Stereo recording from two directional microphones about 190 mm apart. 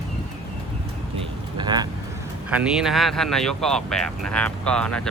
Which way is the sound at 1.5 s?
25° right (ahead or behind).